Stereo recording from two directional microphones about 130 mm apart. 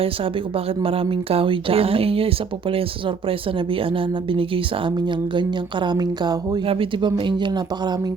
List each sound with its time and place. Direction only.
0.5 s speech: 45° right (ahead or behind)